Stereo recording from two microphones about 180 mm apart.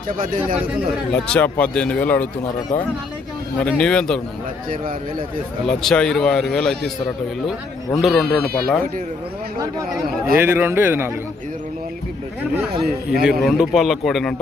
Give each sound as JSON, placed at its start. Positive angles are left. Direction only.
{"t": 1.1, "sound": "speech", "side_deg": 5}
{"t": 3.6, "sound": "speech", "side_deg": 5}
{"t": 5.6, "sound": "speech", "side_deg": 5}
{"t": 7.9, "sound": "speech", "side_deg": 0}
{"t": 10.3, "sound": "speech", "side_deg": -10}
{"t": 13.2, "sound": "speech", "side_deg": 0}